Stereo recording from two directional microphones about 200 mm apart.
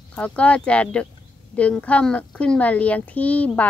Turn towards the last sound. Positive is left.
turn(degrees=5)  # may be behind; listen again after turning